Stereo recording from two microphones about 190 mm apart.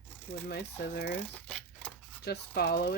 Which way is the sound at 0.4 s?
60° left (ahead or behind).